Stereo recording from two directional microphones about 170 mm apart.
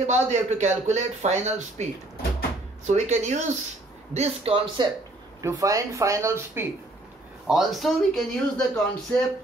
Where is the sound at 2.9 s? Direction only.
45° right (ahead or behind).